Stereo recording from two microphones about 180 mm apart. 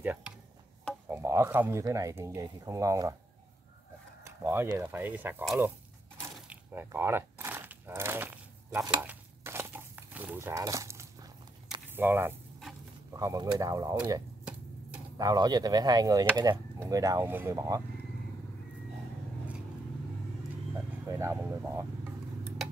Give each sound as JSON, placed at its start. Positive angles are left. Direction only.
{"t": 1.1, "sound": "speech", "side_deg": -15}
{"t": 4.2, "sound": "speech", "side_deg": -15}
{"t": 6.4, "sound": "a sound", "side_deg": -10}
{"t": 11.9, "sound": "speech", "side_deg": -10}
{"t": 15.1, "sound": "speech", "side_deg": -20}
{"t": 21.1, "sound": "speech", "side_deg": -15}